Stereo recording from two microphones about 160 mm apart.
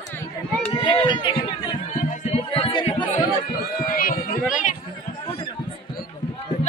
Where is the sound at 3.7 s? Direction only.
60° left (ahead or behind).